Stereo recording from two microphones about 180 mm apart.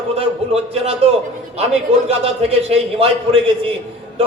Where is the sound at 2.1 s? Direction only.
35° right (ahead or behind).